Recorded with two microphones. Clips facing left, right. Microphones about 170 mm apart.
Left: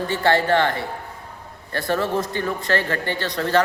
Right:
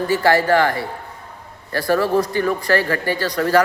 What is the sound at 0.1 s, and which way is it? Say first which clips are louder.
A man's voice: right 3 dB; 25° left (ahead or behind).